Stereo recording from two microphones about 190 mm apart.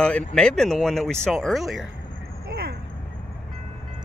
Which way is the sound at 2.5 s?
55° right (ahead or behind).